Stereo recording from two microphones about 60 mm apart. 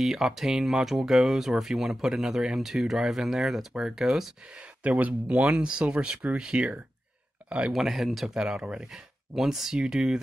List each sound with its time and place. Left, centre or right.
0.0 s speech: centre
4.8 s speech: right
7.7 s speech: centre
8.4 s speech: centre